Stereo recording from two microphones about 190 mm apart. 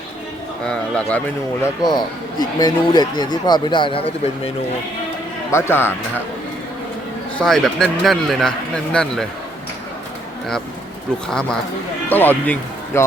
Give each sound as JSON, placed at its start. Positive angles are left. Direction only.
{"t": 0.6, "sound": "a man's voice", "side_deg": 5}
{"t": 1.9, "sound": "speech", "side_deg": 20}
{"t": 5.5, "sound": "a man's voice", "side_deg": 15}
{"t": 7.3, "sound": "a man's voice", "side_deg": 0}
{"t": 11.3, "sound": "a man's voice", "side_deg": 5}